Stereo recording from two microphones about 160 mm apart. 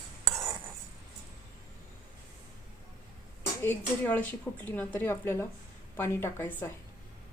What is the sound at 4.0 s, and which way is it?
Speech, 10° left (ahead or behind).